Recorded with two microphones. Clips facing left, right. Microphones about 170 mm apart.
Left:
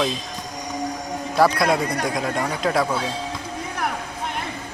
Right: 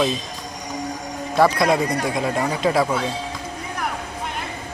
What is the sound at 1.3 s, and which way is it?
Speech, centre (ahead or behind).